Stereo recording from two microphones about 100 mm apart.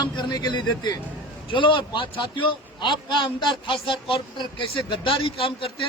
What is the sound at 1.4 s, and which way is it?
A man's voice, 55° left (ahead or behind).